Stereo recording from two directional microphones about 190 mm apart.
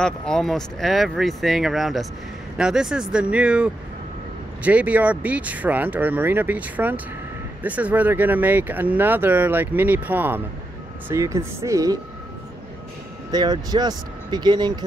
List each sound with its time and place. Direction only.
0.0 s speech: 5° left (ahead or behind); by 12.0 s 15° right (ahead or behind)
13.3 s speech: 20° right (ahead or behind)